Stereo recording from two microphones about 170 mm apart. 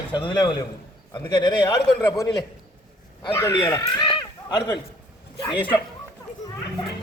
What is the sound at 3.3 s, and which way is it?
Speech, 15° left (ahead or behind).